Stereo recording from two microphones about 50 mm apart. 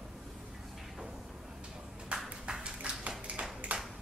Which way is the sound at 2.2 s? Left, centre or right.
Centre.